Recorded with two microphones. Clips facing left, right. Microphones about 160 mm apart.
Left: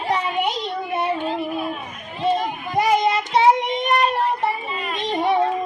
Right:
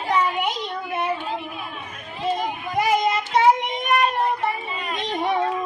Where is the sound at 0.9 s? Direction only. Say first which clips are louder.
Left 2 dB; 25° left (ahead or behind).